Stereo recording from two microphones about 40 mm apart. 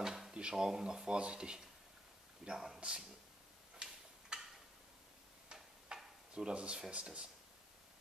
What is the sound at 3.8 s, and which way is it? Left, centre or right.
Tick-tock, right.